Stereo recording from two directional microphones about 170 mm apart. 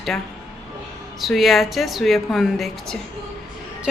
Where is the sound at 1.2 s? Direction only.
Centre (ahead or behind).